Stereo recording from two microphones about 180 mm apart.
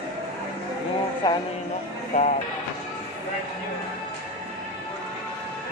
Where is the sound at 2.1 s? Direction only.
40° left (ahead or behind).